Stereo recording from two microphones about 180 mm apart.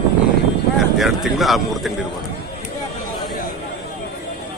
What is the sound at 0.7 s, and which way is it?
Speech, centre (ahead or behind).